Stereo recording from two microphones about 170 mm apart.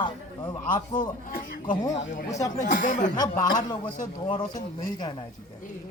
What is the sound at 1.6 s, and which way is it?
Speech, 25° left (ahead or behind).